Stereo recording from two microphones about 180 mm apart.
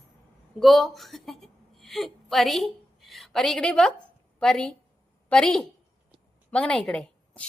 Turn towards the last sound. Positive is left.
turn(degrees=5)  # may be behind; listen again after turning